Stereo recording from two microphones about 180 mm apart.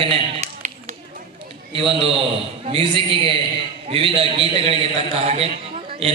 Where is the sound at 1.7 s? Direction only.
30° right (ahead or behind).